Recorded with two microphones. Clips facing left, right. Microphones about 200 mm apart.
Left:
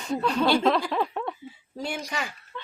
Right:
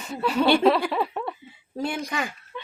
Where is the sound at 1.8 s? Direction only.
55° right (ahead or behind).